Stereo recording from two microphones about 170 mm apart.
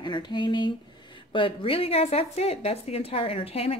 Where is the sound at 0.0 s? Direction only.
25° left (ahead or behind).